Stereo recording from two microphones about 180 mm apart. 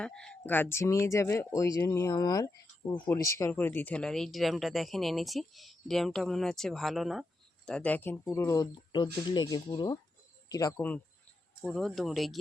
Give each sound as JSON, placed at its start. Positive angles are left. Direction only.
{"t": 0.0, "sound": "speech", "side_deg": 5}